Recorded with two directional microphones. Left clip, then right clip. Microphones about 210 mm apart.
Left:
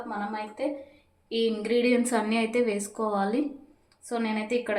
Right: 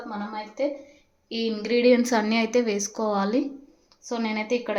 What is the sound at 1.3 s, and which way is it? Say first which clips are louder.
A woman's voice: even; 30° right (ahead or behind).